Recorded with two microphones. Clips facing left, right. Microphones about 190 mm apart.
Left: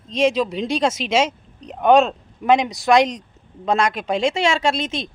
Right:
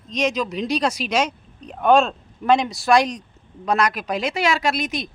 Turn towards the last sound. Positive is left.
turn(degrees=25)  # may be behind; listen again after turning